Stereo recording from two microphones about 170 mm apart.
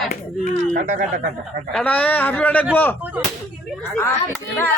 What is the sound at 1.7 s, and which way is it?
Speech, 10° left (ahead or behind).